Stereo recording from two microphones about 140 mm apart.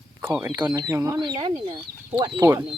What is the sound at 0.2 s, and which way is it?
Speech, 15° right (ahead or behind).